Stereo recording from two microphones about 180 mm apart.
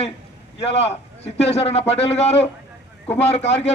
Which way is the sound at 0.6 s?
35° left (ahead or behind).